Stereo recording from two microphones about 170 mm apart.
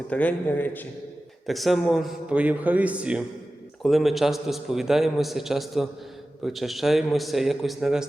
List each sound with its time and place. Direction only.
0.1 s a man's voice: 10° left (ahead or behind)
1.5 s a man's voice: centre (ahead or behind)